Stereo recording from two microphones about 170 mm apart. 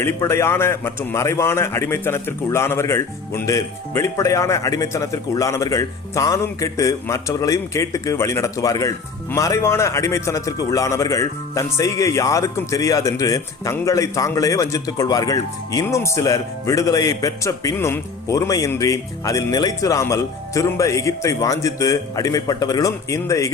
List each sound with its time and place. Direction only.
0.0 s a man's voice: 15° left (ahead or behind)